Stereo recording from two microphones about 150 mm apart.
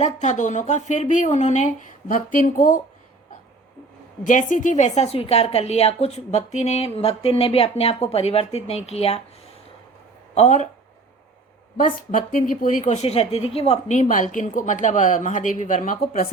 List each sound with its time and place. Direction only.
0.0 s speech: 50° left (ahead or behind)
4.2 s a woman's voice: 55° left (ahead or behind)
10.3 s a woman's voice: 50° left (ahead or behind)
11.8 s speech: 65° left (ahead or behind)